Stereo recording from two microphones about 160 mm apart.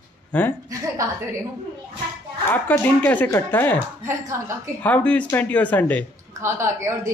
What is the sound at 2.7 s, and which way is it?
Speech, 15° left (ahead or behind).